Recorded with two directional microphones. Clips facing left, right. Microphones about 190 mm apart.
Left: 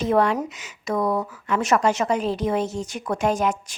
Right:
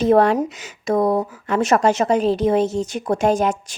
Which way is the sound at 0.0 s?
30° right (ahead or behind).